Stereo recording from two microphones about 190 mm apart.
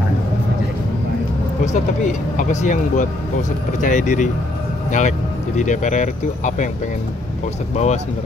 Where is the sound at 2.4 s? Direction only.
40° left (ahead or behind).